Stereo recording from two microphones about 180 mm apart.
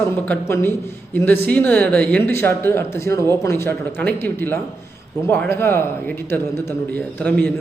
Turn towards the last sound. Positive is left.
turn(degrees=10)  # may be behind; listen again after turning